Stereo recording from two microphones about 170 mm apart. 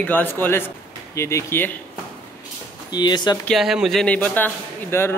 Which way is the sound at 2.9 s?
25° left (ahead or behind).